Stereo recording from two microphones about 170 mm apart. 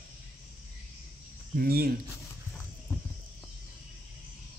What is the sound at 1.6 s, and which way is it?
Speech, 65° right (ahead or behind).